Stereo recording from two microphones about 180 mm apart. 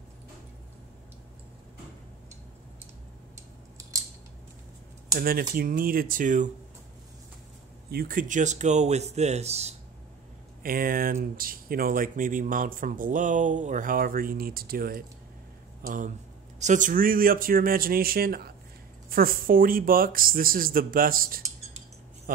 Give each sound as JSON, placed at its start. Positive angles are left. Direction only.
{"t": 5.1, "sound": "speech", "side_deg": -55}
{"t": 7.9, "sound": "speech", "side_deg": -55}
{"t": 10.6, "sound": "speech", "side_deg": -55}